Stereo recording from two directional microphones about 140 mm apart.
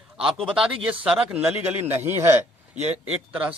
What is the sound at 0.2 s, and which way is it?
Speech, 5° right (ahead or behind).